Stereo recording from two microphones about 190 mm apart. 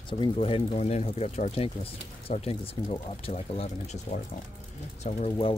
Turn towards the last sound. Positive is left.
turn(degrees=35)  # may be behind; listen again after turning